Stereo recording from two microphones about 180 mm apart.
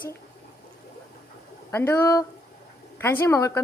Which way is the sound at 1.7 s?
15° left (ahead or behind).